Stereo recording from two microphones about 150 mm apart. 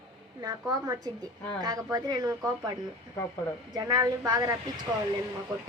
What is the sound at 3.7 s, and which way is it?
Speech, 25° right (ahead or behind).